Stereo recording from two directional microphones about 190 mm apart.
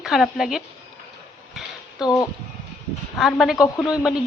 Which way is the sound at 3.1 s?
Centre (ahead or behind).